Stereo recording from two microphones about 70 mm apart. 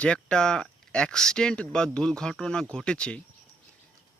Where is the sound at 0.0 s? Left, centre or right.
Centre.